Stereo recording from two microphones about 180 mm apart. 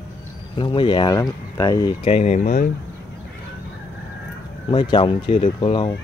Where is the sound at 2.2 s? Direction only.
40° left (ahead or behind).